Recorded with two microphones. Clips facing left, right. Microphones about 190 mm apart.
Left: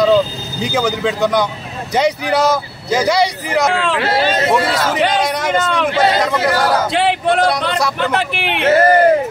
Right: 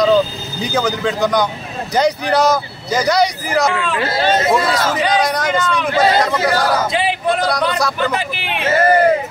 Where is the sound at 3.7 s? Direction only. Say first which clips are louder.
Left 3 dB; 80° left.